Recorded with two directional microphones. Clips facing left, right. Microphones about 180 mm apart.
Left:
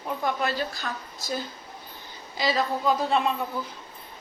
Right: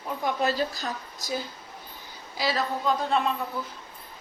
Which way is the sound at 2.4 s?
5° right (ahead or behind).